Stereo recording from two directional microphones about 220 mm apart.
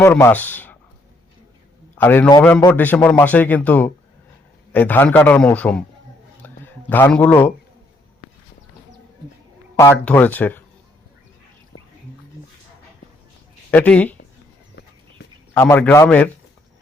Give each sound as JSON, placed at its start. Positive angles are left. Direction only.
{"t": 0.0, "sound": "speech", "side_deg": 10}
{"t": 2.0, "sound": "speech", "side_deg": 10}
{"t": 6.4, "sound": "a sound", "side_deg": 10}
{"t": 9.7, "sound": "speech", "side_deg": 10}
{"t": 13.7, "sound": "speech", "side_deg": 5}
{"t": 14.8, "sound": "horse", "side_deg": 50}
{"t": 15.5, "sound": "speech", "side_deg": 10}